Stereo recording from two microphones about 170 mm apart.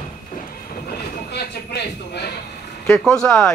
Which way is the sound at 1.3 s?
75° left (ahead or behind).